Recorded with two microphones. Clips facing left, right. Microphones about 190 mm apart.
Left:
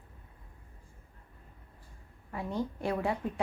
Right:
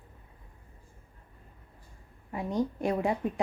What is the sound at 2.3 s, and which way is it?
Speech, 15° right (ahead or behind).